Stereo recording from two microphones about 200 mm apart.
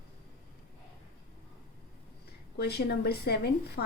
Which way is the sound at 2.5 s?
55° left (ahead or behind).